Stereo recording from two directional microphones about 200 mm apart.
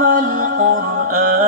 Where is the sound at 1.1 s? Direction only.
45° right (ahead or behind).